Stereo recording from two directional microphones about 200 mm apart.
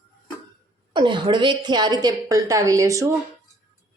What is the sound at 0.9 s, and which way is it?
A woman's voice, 25° right (ahead or behind).